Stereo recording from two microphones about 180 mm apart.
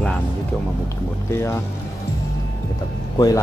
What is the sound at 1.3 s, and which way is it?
Speech, 15° left (ahead or behind).